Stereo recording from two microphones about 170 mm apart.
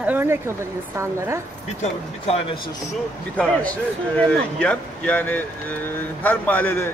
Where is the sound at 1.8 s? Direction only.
35° left (ahead or behind).